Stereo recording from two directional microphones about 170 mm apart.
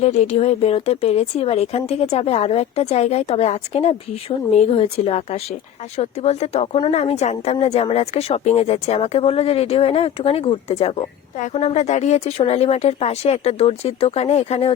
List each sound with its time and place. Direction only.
0.0 s speech: 40° left (ahead or behind)